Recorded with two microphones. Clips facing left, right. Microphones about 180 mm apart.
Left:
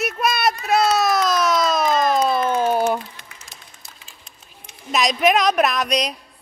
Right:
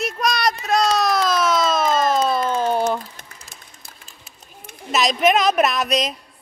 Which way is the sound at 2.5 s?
10° left (ahead or behind).